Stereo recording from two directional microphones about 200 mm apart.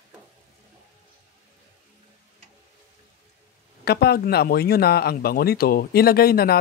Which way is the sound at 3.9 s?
55° left (ahead or behind).